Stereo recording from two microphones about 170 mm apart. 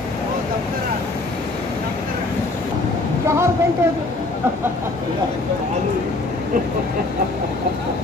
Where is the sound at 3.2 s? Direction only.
15° right (ahead or behind).